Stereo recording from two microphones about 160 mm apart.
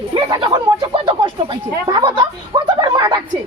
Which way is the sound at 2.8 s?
25° right (ahead or behind).